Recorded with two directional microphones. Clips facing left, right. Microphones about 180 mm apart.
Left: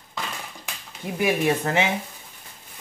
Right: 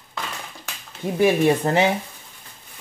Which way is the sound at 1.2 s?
35° right (ahead or behind).